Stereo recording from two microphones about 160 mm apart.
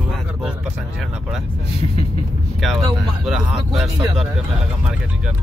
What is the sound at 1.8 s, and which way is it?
Vehicle, 35° left (ahead or behind).